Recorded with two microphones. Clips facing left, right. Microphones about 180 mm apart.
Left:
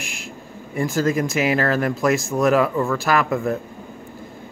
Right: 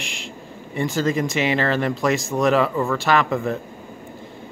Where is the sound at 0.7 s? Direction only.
5° left (ahead or behind).